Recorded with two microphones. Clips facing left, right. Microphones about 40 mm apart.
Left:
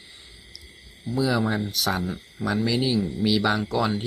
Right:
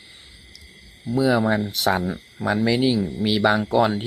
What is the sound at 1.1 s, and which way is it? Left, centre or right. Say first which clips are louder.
Speech: right 5 dB; centre.